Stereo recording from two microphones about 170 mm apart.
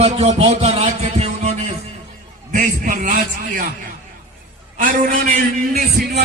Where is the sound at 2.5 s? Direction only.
45° right (ahead or behind).